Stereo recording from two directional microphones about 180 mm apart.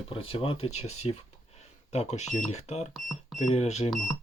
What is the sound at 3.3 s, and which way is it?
Speech, 35° left (ahead or behind).